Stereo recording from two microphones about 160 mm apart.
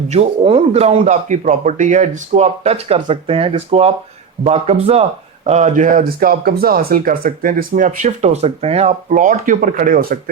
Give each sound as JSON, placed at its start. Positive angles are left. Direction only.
{"t": 0.1, "sound": "speech", "side_deg": -40}